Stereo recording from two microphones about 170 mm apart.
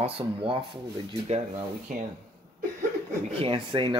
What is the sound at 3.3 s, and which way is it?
Speech, 35° right (ahead or behind).